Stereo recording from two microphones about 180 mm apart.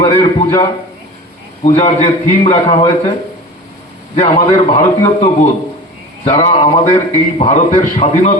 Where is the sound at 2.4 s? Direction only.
25° left (ahead or behind).